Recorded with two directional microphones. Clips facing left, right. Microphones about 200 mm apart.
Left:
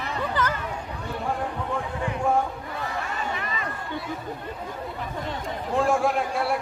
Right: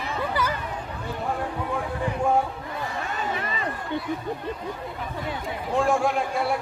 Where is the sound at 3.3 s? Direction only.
30° right (ahead or behind).